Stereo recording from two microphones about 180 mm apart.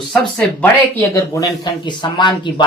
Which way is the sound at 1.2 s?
20° left (ahead or behind).